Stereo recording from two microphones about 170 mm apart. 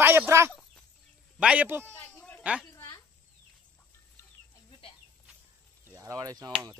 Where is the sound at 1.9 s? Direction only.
10° left (ahead or behind).